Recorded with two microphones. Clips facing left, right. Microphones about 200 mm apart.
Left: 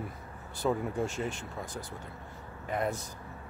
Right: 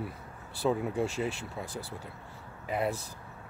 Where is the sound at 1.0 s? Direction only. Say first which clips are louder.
Right 2 dB; 35° right (ahead or behind).